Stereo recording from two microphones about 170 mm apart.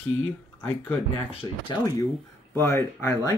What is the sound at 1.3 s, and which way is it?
Speech, 30° left (ahead or behind).